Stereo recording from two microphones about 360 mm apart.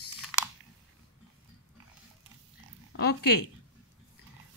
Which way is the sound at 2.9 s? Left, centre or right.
Left.